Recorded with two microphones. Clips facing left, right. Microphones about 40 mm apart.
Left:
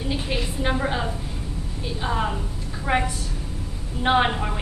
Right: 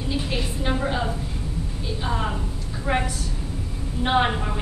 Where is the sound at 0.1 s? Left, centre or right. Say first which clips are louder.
Right 1 dB; centre.